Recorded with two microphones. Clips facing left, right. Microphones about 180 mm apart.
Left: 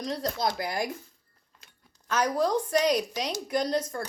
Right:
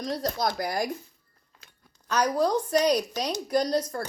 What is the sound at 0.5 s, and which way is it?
Speech, 40° right (ahead or behind).